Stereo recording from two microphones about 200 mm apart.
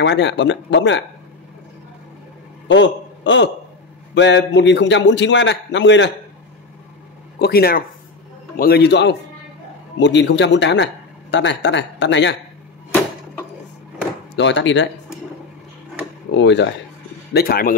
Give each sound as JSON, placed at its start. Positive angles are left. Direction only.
{"t": 0.0, "sound": "a man's voice", "side_deg": 60}
{"t": 2.7, "sound": "a man's voice", "side_deg": 65}
{"t": 7.3, "sound": "a man's voice", "side_deg": 50}
{"t": 14.3, "sound": "a man's voice", "side_deg": 65}
{"t": 16.3, "sound": "a man's voice", "side_deg": 60}
{"t": 17.3, "sound": "a man's voice", "side_deg": 50}